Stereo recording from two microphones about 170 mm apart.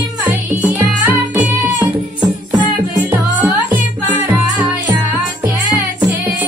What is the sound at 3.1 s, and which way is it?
Music, 10° right (ahead or behind).